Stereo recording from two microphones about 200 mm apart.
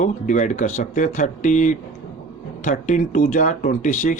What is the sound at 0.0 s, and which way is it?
Speech, 40° left (ahead or behind).